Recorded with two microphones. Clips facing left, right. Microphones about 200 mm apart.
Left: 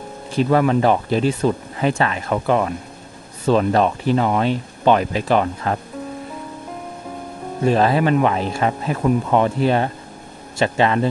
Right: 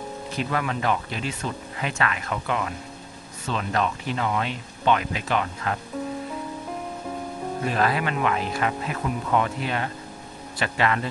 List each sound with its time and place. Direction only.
0.3 s speech: 35° left (ahead or behind)
3.7 s speech: 35° left (ahead or behind)
7.6 s speech: 30° left (ahead or behind)